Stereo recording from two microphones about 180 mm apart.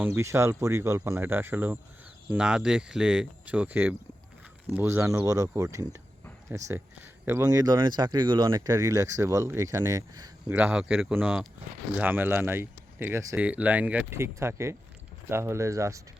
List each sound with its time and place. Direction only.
0.0 s speech: 15° right (ahead or behind)
10.5 s speech: 10° right (ahead or behind)